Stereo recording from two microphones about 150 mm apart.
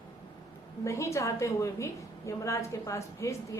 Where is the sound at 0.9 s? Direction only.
20° left (ahead or behind).